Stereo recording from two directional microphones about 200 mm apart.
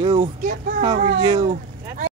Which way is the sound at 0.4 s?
45° right (ahead or behind).